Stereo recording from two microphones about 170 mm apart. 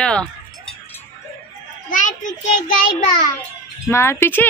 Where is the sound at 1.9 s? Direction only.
45° left (ahead or behind).